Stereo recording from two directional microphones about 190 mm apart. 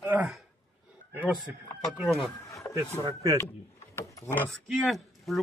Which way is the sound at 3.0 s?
20° right (ahead or behind).